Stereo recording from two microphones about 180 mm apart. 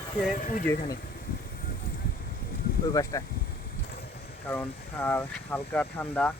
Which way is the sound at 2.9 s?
20° left (ahead or behind).